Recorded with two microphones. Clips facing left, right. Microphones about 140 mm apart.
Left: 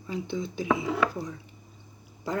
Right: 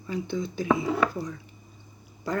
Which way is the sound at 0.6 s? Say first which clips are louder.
Right 2 dB; 35° right (ahead or behind).